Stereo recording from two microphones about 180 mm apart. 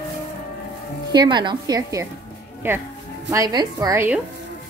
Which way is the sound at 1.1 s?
25° right (ahead or behind).